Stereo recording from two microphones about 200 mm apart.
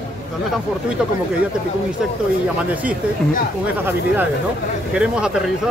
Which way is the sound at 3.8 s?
10° right (ahead or behind).